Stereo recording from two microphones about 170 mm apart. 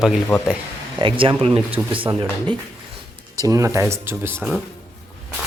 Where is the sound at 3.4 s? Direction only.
20° right (ahead or behind).